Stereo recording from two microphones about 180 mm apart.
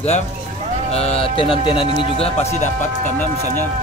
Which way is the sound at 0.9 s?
35° left (ahead or behind).